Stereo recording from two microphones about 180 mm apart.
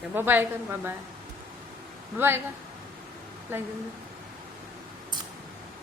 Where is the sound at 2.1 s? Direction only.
10° right (ahead or behind).